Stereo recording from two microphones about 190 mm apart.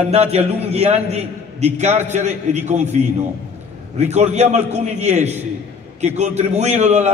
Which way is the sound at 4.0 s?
35° right (ahead or behind).